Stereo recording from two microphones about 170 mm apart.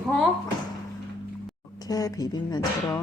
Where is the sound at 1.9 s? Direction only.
20° left (ahead or behind).